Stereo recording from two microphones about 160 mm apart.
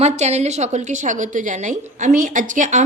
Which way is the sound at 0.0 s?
45° right (ahead or behind).